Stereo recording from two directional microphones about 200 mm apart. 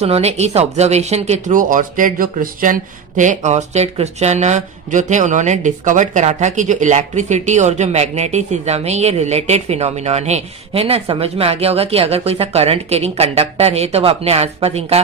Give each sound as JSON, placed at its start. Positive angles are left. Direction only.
{"t": 0.0, "sound": "speech", "side_deg": -30}